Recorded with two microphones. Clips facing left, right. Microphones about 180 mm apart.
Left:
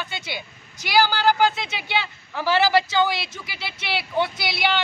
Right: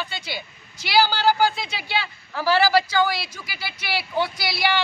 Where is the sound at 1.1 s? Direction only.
15° left (ahead or behind).